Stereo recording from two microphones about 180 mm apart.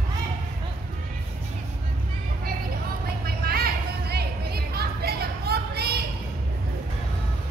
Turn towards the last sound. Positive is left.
turn(degrees=-60)  # may be behind; listen again after turning